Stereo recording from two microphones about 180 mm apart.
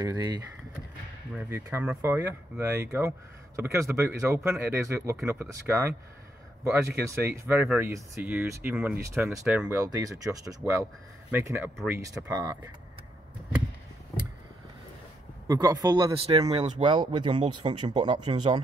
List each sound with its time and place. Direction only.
0.0 s a man's voice: 20° right (ahead or behind)
1.5 s speech: 10° right (ahead or behind)
7.1 s a man's voice: 15° right (ahead or behind)
15.4 s a man's voice: 20° right (ahead or behind); by 16.8 s 40° right (ahead or behind)
16.8 s a man's voice: 25° right (ahead or behind)